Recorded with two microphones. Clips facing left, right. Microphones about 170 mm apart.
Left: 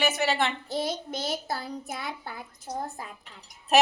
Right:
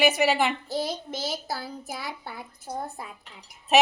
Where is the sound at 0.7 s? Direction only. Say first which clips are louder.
Even; centre (ahead or behind).